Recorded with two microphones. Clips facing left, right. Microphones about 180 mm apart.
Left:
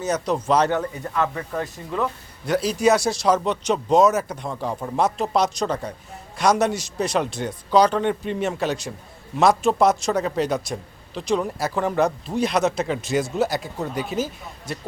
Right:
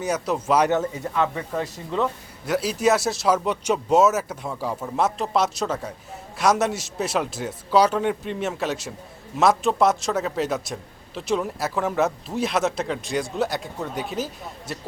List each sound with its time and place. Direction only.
0.0 s a man's voice: 10° right (ahead or behind)